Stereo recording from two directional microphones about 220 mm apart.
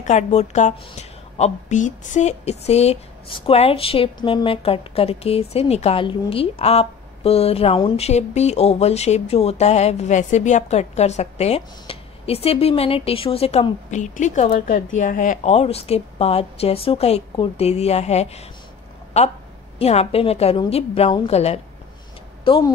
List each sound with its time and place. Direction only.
0.0 s a woman's voice: 30° left (ahead or behind)